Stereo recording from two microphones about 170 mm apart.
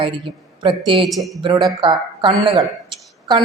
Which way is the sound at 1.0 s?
Centre (ahead or behind).